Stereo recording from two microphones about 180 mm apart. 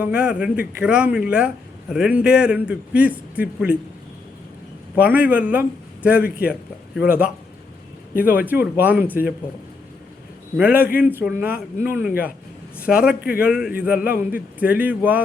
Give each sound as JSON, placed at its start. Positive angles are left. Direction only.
{"t": 0.0, "sound": "a man's voice", "side_deg": -5}
{"t": 4.9, "sound": "a man's voice", "side_deg": -10}
{"t": 8.1, "sound": "speech", "side_deg": 55}
{"t": 8.4, "sound": "speech", "side_deg": -10}
{"t": 10.6, "sound": "a man's voice", "side_deg": -10}
{"t": 13.2, "sound": "a man's voice", "side_deg": 55}
{"t": 13.5, "sound": "a man's voice", "side_deg": -5}